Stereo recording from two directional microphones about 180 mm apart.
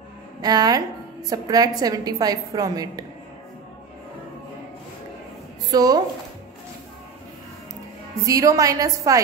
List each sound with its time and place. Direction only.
0.4 s a woman's voice: 20° right (ahead or behind)
5.7 s a woman's voice: 20° right (ahead or behind)
8.3 s a woman's voice: 20° right (ahead or behind)